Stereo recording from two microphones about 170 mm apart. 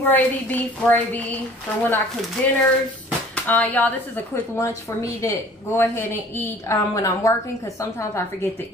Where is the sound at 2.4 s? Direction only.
10° left (ahead or behind).